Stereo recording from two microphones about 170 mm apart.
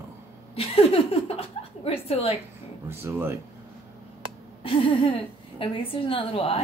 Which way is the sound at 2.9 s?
15° right (ahead or behind).